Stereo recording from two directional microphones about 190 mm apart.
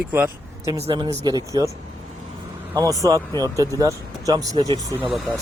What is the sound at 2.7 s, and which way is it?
Speech, 20° right (ahead or behind).